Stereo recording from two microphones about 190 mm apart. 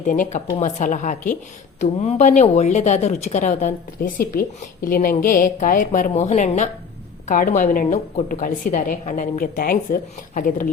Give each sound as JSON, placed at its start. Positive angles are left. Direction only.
{"t": 0.0, "sound": "a woman's voice", "side_deg": 45}